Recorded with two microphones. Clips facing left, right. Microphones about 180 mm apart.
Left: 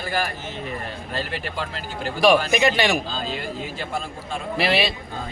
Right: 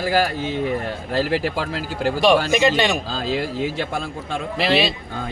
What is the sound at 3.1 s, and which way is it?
Speech, 90° right.